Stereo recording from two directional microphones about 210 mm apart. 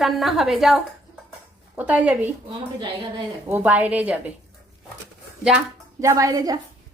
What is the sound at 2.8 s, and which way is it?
Speech, 25° right (ahead or behind).